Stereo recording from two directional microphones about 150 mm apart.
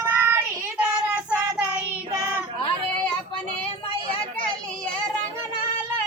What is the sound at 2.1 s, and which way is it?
Child singing, 15° right (ahead or behind).